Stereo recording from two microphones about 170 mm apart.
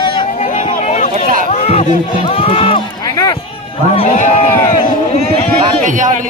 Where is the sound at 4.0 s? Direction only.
40° left (ahead or behind).